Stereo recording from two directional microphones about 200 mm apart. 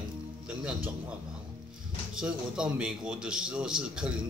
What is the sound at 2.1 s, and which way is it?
A man's voice, 5° right (ahead or behind).